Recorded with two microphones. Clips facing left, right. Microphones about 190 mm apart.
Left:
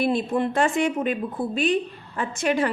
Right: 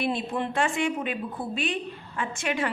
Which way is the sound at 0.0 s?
40° left (ahead or behind).